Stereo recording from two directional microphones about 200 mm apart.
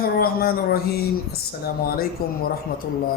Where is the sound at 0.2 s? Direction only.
50° left (ahead or behind).